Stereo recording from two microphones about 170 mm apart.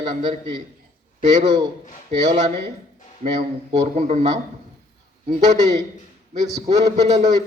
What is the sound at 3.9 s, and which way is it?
Speech, 40° right (ahead or behind).